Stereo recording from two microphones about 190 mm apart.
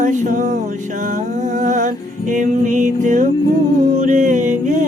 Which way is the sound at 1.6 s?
40° right (ahead or behind).